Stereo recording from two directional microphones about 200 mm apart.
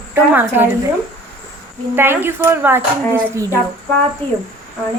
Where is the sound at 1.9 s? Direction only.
10° right (ahead or behind).